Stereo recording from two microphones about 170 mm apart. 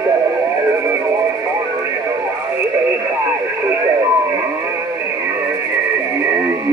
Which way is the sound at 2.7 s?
15° right (ahead or behind).